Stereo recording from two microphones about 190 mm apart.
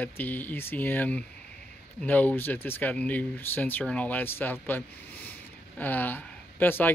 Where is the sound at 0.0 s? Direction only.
10° left (ahead or behind).